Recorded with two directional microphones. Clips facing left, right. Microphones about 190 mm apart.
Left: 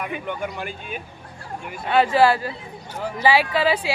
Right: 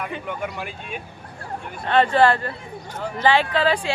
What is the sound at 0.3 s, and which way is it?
Speech, centre (ahead or behind).